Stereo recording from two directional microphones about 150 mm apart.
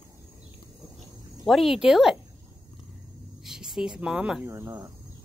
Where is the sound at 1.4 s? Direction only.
Centre (ahead or behind).